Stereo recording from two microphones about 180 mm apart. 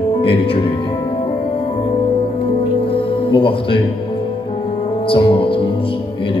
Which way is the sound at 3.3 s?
30° left (ahead or behind).